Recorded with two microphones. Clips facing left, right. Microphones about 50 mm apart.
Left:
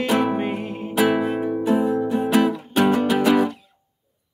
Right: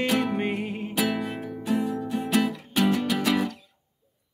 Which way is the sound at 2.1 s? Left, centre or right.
Left.